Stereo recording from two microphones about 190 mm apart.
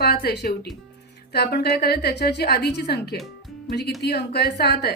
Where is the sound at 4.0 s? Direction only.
60° left (ahead or behind).